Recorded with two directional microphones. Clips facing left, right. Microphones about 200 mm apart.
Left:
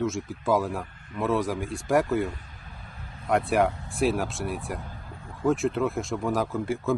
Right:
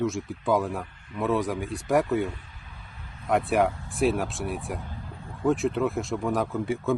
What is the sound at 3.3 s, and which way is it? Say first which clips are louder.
Speech: even; centre (ahead or behind).